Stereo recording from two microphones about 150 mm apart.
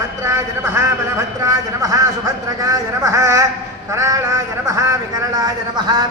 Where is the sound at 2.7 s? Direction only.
25° right (ahead or behind).